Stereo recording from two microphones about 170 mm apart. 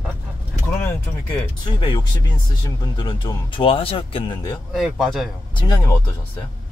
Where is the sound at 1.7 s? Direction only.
25° left (ahead or behind).